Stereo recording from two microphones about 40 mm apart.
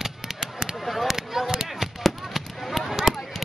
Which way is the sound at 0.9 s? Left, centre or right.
Centre.